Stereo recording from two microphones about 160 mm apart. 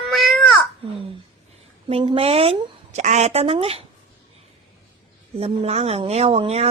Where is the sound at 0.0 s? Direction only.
Centre (ahead or behind).